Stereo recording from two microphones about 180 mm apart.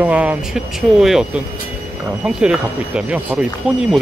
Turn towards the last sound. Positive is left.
turn(degrees=-5)  # may be behind; listen again after turning